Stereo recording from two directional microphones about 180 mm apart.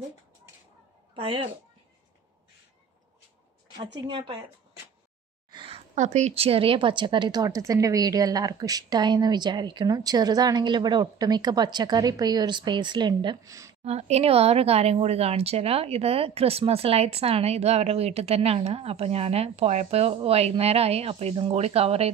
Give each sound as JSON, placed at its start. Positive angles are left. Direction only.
{"t": 1.1, "sound": "a woman's voice", "side_deg": -30}
{"t": 4.1, "sound": "speech", "side_deg": -30}
{"t": 5.5, "sound": "speech", "side_deg": -30}
{"t": 13.8, "sound": "speech", "side_deg": -35}